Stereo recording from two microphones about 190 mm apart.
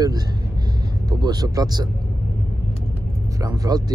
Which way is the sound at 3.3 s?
20° right (ahead or behind).